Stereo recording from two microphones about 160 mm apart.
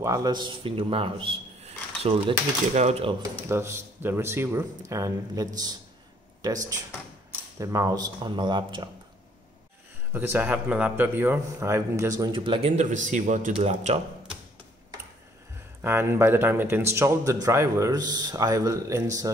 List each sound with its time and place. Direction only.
0.0 s speech: 20° right (ahead or behind); by 3.2 s 40° right (ahead or behind)
3.2 s speech: 15° right (ahead or behind)
7.5 s speech: 20° right (ahead or behind)
10.1 s speech: 10° right (ahead or behind); by 14.0 s 45° right (ahead or behind)
15.8 s speech: 15° right (ahead or behind)